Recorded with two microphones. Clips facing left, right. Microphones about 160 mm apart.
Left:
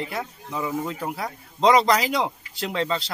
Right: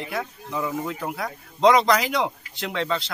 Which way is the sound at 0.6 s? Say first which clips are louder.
Left 1 dB; 25° left (ahead or behind).